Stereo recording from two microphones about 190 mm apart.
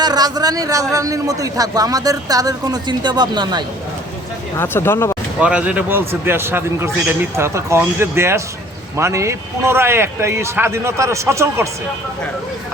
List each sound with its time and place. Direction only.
0.0 s speech: 20° right (ahead or behind)
4.5 s speech: 10° left (ahead or behind)
5.4 s a man's voice: 5° right (ahead or behind)